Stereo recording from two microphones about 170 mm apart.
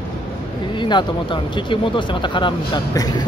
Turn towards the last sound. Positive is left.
turn(degrees=25)  # may be behind; listen again after turning